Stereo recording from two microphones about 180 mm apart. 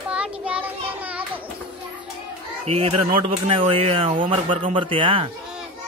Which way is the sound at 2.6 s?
35° right (ahead or behind).